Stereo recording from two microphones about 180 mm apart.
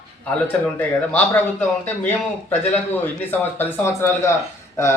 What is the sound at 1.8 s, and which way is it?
Speech, 40° left (ahead or behind).